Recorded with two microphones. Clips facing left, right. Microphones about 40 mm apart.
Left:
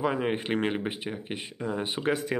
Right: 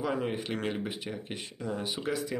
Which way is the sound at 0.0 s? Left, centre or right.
Left.